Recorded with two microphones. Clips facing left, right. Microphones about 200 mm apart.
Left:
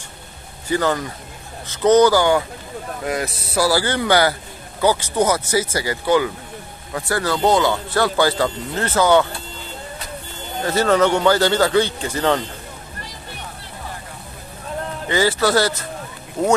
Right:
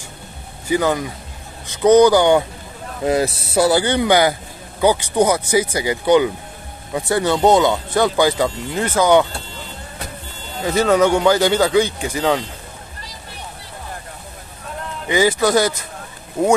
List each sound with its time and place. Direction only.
0.7 s speech: 10° right (ahead or behind)
10.6 s speech: 15° right (ahead or behind)
15.0 s speech: 15° right (ahead or behind)